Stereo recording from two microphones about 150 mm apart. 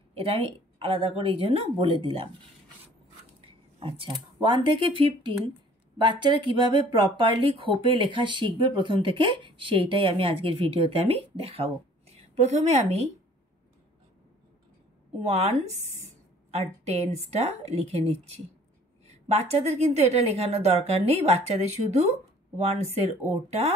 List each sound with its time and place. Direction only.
0.1 s speech: 40° right (ahead or behind)
3.3 s speech: 40° right (ahead or behind)
15.2 s a woman's voice: 45° right (ahead or behind)